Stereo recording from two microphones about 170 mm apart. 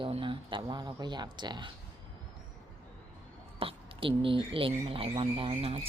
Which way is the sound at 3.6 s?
35° right (ahead or behind).